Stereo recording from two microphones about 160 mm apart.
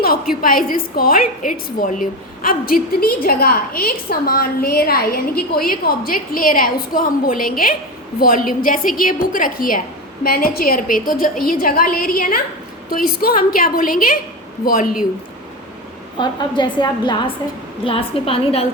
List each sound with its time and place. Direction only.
0.4 s a woman's voice: 60° left (ahead or behind)
16.1 s a woman's voice: 30° left (ahead or behind)